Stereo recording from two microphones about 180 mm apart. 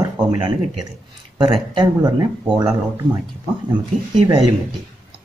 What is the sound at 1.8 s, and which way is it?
Speech, 20° right (ahead or behind).